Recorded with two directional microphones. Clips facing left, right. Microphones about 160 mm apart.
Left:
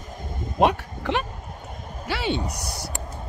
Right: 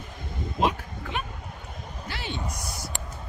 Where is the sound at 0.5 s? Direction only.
70° left (ahead or behind).